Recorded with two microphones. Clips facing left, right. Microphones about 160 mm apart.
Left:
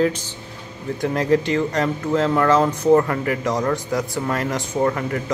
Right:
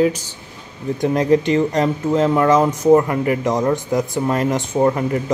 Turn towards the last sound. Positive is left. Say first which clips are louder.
# right 4 dB
turn(degrees=-25)  # may be behind; listen again after turning